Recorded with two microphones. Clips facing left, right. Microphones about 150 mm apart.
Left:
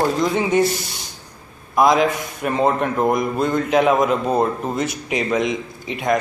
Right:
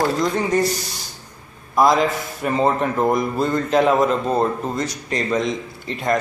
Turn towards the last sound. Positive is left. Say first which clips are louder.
# left 1 dB
turn(degrees=5)  # may be behind; listen again after turning